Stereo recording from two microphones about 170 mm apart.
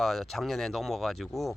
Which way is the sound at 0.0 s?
Centre (ahead or behind).